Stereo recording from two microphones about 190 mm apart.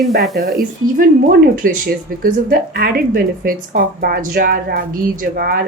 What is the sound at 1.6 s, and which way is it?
Speech, 45° right (ahead or behind).